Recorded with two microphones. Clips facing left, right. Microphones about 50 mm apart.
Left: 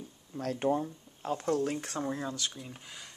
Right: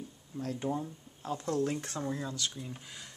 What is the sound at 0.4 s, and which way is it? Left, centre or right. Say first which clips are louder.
Speech: left 3 dB; left.